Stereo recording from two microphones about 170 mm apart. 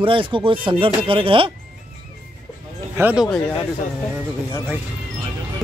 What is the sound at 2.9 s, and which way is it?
Speech, 10° right (ahead or behind).